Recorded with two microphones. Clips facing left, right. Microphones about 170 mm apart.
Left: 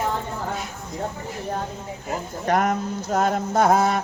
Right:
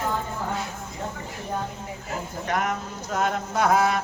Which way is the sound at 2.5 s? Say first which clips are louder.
Left 6 dB; 40° left (ahead or behind).